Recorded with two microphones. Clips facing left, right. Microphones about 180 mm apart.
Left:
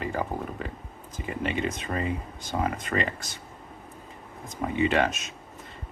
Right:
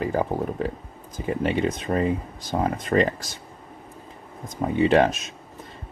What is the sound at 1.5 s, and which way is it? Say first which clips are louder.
Speech: right 5 dB; 45° right (ahead or behind).